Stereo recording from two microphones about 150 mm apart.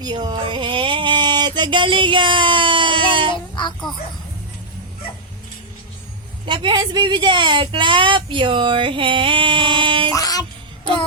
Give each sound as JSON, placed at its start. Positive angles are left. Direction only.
{"t": 0.0, "sound": "music", "side_deg": -30}
{"t": 3.3, "sound": "child singing", "side_deg": 30}
{"t": 6.4, "sound": "speech", "side_deg": -35}
{"t": 10.1, "sound": "music", "side_deg": 25}